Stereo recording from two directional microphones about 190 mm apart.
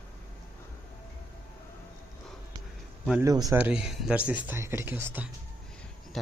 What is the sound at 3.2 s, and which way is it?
Speech, 20° right (ahead or behind).